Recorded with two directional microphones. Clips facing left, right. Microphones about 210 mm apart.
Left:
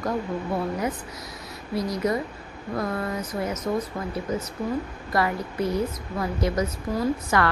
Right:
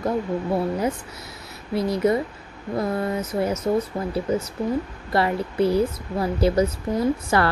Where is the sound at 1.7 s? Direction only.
25° right (ahead or behind).